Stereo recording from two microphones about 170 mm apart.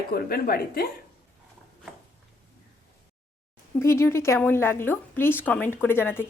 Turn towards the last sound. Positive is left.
turn(degrees=15)  # may be behind; listen again after turning